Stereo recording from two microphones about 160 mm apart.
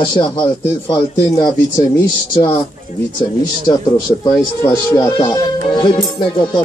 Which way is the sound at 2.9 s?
50° left (ahead or behind).